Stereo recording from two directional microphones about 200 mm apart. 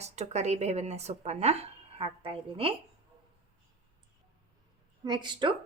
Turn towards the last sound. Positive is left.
turn(degrees=-20)  # may be behind; listen again after turning